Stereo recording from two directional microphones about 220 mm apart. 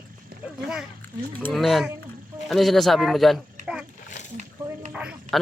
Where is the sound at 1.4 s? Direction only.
5° left (ahead or behind).